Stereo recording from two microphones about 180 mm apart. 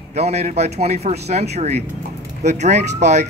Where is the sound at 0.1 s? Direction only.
35° right (ahead or behind).